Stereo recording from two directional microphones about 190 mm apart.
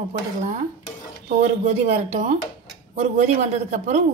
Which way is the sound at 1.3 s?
35° right (ahead or behind).